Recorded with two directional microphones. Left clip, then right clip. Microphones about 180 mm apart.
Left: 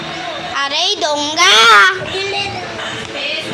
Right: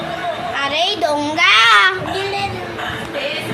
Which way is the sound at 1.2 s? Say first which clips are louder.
Left 3 dB; centre (ahead or behind).